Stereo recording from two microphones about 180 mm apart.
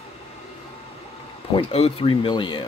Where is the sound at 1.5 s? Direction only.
35° left (ahead or behind).